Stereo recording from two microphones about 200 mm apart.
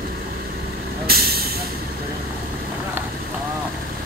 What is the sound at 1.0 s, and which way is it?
Hiss, 50° right (ahead or behind).